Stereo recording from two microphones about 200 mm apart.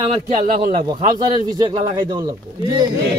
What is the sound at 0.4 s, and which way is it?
Speech, 45° right (ahead or behind).